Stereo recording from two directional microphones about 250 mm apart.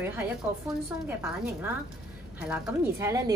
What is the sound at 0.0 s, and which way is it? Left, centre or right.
A woman's voice, centre.